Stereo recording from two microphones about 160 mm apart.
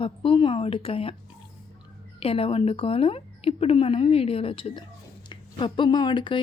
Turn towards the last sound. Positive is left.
turn(degrees=30)  # may be behind; listen again after turning